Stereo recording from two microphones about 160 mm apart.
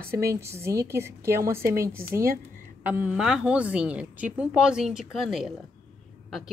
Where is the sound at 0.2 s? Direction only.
20° right (ahead or behind).